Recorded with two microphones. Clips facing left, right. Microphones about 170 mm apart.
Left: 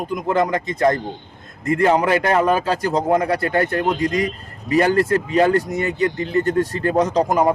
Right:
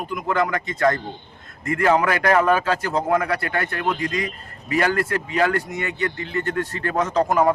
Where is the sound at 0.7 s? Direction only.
20° left (ahead or behind).